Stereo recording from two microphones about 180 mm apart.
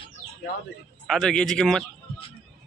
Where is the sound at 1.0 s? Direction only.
Centre (ahead or behind).